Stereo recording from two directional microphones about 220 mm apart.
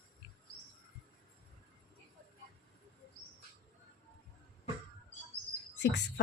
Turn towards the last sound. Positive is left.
turn(degrees=55)  # may be behind; listen again after turning